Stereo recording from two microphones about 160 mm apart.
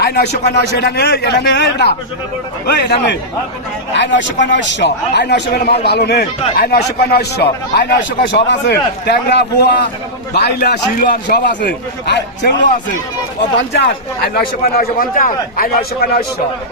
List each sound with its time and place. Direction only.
0.0 s a sound: 90° left
0.8 s a man's voice: 90° left
11.0 s a man's voice: 65° left (ahead or behind); by 12.5 s 90° left
13.6 s a man's voice: 90° left
14.3 s a man's voice: 65° left (ahead or behind)